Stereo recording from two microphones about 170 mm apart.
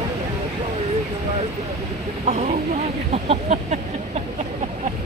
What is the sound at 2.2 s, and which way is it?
Speech, 45° right (ahead or behind).